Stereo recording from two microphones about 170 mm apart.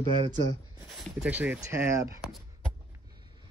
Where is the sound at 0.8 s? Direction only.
5° right (ahead or behind).